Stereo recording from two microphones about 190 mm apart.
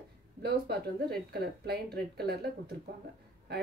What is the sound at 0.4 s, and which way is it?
A woman's voice, 55° right (ahead or behind).